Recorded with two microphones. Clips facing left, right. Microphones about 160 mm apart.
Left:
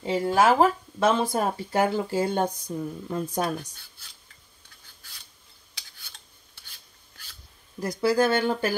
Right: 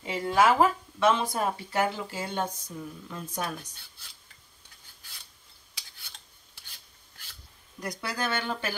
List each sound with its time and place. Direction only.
0.0 s speech: 30° left (ahead or behind)
8.1 s speech: 35° left (ahead or behind)